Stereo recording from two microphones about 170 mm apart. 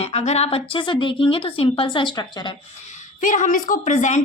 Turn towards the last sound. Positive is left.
turn(degrees=45)  # may be behind; listen again after turning